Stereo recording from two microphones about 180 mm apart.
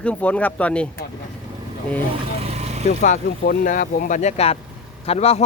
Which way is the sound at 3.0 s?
45° left (ahead or behind).